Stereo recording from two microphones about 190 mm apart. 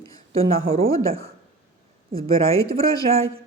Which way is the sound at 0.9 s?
15° left (ahead or behind).